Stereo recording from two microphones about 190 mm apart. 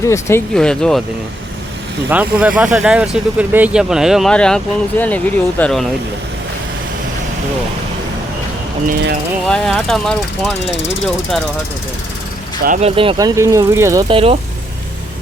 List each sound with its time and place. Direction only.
0.0 s speech: 15° left (ahead or behind)
0.5 s speech: 5° left (ahead or behind)
2.0 s speech: 5° right (ahead or behind)
9.5 s speech: centre (ahead or behind)
10.7 s speech: 75° left (ahead or behind)
12.6 s speech: 40° right (ahead or behind)
13.0 s speech: 25° right (ahead or behind)
14.1 s speech: 30° right (ahead or behind)